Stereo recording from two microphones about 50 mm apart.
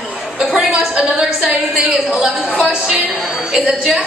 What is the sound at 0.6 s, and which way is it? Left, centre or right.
Speech, right.